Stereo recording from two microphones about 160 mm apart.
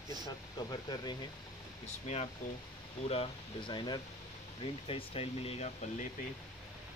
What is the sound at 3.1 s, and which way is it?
Speech, 35° left (ahead or behind).